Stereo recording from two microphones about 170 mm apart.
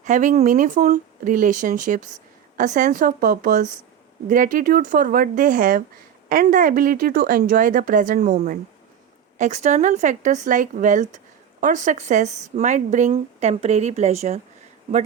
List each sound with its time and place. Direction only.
0.0 s a woman's voice: 50° right (ahead or behind)